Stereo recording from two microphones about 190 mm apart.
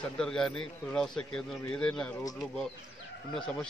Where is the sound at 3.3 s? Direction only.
5° left (ahead or behind).